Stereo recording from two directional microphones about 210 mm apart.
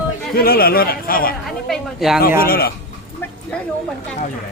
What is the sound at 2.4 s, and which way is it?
Speech, 45° left (ahead or behind).